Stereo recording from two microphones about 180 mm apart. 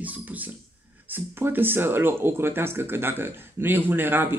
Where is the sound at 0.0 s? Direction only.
10° right (ahead or behind).